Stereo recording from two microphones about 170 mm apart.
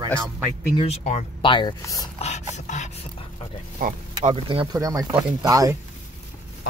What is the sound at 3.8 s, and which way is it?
Speech, 55° right (ahead or behind).